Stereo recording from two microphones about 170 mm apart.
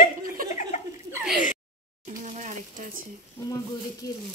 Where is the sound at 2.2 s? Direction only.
45° right (ahead or behind).